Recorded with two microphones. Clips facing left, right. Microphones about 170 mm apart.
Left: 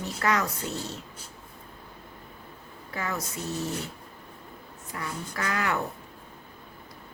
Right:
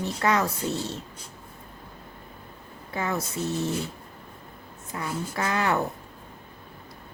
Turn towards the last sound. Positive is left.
turn(degrees=-30)  # may be behind; listen again after turning